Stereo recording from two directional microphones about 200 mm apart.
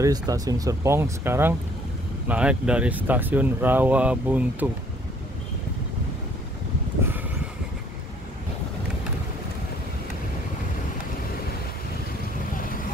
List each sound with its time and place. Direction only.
0.0 s speech: 15° right (ahead or behind)